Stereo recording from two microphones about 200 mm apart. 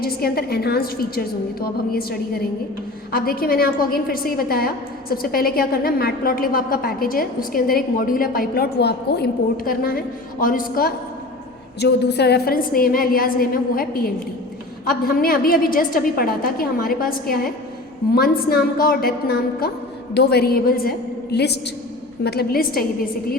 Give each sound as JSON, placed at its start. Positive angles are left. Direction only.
{"t": 0.0, "sound": "a woman's voice", "side_deg": 50}